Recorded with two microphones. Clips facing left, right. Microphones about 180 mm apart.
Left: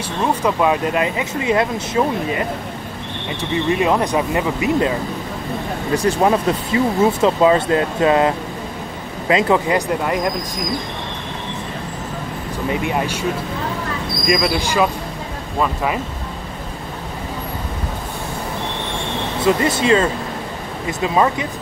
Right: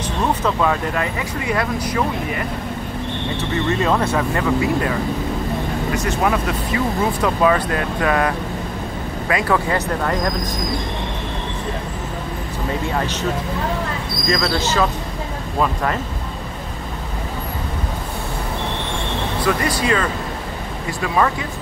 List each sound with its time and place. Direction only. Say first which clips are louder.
0.3 s speech: left 3 dB; 10° left (ahead or behind)
5.9 s speech: left 5 dB; 30° left (ahead or behind); by 10.3 s 15° left (ahead or behind)
12.8 s speech: left 2 dB; 15° left (ahead or behind)
14.2 s speech: left 2 dB; 15° left (ahead or behind)
19.4 s speech: left 4 dB; 25° left (ahead or behind)